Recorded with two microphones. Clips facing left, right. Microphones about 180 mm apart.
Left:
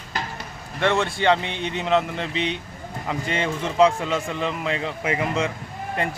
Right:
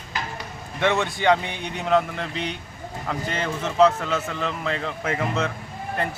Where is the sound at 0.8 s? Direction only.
5° right (ahead or behind).